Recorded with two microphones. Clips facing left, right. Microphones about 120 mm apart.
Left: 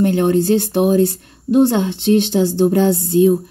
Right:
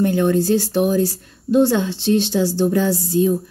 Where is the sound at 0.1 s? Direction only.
60° left (ahead or behind).